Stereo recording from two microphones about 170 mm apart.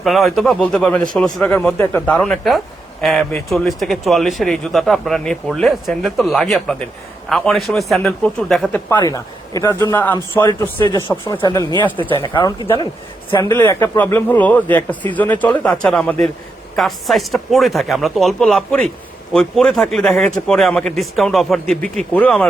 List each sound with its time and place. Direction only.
0.0 s a man's voice: centre (ahead or behind)
9.0 s a man's voice: 20° left (ahead or behind)
11.3 s speech: 25° left (ahead or behind)
13.5 s a man's voice: 15° left (ahead or behind)